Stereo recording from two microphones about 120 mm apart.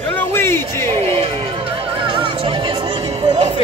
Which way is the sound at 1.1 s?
50° right (ahead or behind).